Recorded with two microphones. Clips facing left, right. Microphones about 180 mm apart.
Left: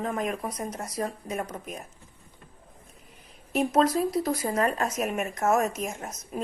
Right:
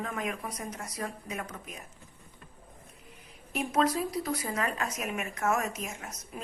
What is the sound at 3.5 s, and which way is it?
A woman's voice, 45° left (ahead or behind).